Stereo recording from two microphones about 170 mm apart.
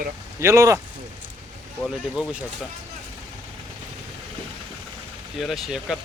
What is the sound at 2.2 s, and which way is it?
Speech, 5° right (ahead or behind).